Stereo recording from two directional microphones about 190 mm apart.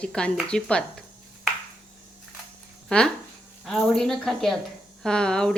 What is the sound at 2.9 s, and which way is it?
Speech, 5° left (ahead or behind).